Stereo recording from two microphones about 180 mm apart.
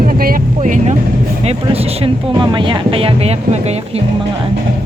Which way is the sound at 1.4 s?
35° right (ahead or behind).